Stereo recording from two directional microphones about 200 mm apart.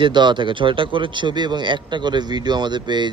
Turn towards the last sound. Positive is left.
turn(degrees=-20)  # may be behind; listen again after turning